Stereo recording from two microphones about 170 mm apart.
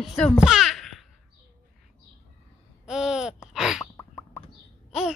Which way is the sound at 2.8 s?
5° right (ahead or behind).